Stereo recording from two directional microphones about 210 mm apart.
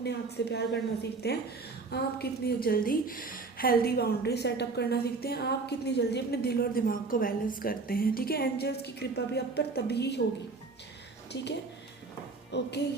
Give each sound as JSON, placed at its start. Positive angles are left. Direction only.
{"t": 0.0, "sound": "a woman's voice", "side_deg": 50}
{"t": 11.3, "sound": "a child's voice", "side_deg": 55}